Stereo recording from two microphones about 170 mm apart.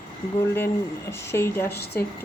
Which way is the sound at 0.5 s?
15° left (ahead or behind).